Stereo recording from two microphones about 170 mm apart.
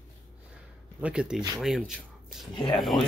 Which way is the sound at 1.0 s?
5° right (ahead or behind).